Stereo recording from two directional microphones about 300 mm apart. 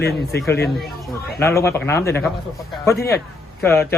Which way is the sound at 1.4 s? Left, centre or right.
Centre.